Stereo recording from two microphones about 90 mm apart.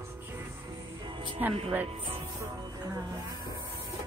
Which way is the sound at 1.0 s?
70° right (ahead or behind).